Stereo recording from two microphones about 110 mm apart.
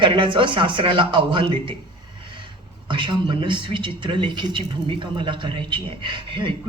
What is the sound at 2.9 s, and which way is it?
Speech, 50° right (ahead or behind).